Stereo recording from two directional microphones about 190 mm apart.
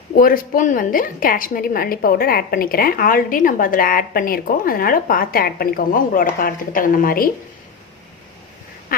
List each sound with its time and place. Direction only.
0.2 s a woman's voice: 45° left (ahead or behind)
8.9 s duck: 50° left (ahead or behind)